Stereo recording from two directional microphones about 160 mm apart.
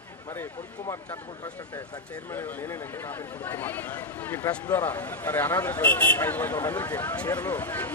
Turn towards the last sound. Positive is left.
turn(degrees=15)  # may be behind; listen again after turning